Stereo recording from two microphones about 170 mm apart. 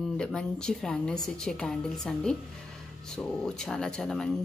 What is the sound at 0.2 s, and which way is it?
Speech, 5° left (ahead or behind).